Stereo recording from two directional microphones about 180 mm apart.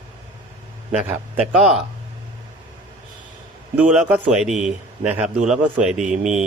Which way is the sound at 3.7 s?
5° right (ahead or behind).